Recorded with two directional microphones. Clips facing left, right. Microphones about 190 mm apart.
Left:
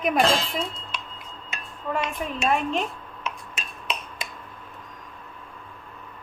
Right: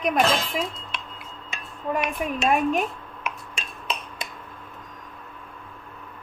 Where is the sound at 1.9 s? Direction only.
15° right (ahead or behind).